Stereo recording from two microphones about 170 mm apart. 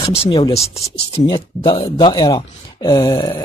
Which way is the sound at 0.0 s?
30° left (ahead or behind).